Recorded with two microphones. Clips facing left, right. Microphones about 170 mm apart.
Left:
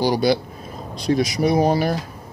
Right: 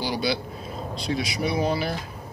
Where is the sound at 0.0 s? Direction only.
45° left (ahead or behind).